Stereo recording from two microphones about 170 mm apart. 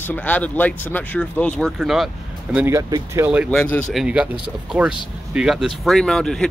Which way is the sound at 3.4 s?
10° left (ahead or behind).